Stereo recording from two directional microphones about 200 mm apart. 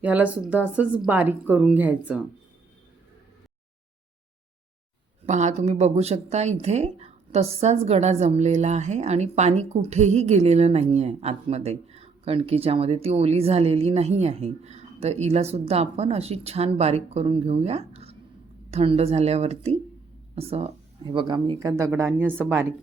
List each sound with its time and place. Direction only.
0.0 s speech: 5° right (ahead or behind)
5.2 s speech: 35° right (ahead or behind); by 22.6 s 10° right (ahead or behind)